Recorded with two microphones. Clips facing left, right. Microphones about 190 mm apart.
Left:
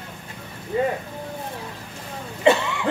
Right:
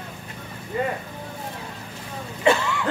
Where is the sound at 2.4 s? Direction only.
20° left (ahead or behind).